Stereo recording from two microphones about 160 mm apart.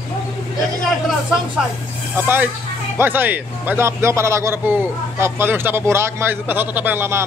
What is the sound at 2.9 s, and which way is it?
A man's voice, 15° right (ahead or behind).